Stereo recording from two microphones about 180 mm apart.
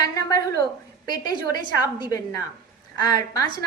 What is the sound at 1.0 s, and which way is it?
A woman's voice, 25° left (ahead or behind).